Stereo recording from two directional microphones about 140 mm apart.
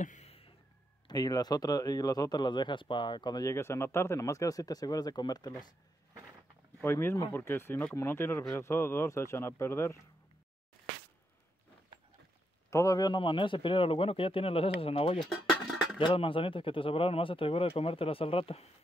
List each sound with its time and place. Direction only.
0.0 s a sound: 60° left (ahead or behind)
1.0 s speech: 25° left (ahead or behind)
6.8 s speech: 15° left (ahead or behind)
12.6 s speech: 20° left (ahead or behind); by 15.1 s 40° left (ahead or behind)
15.1 s a sound: centre (ahead or behind)
16.0 s speech: 40° left (ahead or behind)